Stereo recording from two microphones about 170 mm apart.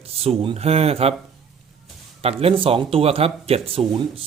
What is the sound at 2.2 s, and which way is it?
Speech, 35° right (ahead or behind).